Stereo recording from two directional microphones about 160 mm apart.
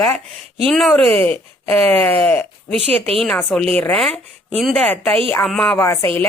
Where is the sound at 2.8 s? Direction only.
40° right (ahead or behind).